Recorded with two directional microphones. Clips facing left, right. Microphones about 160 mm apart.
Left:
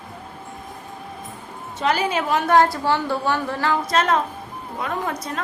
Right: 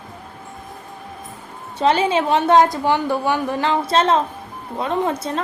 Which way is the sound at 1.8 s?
30° right (ahead or behind).